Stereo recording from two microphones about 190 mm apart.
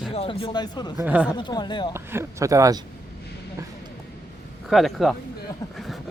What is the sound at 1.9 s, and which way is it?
Speech, 15° right (ahead or behind).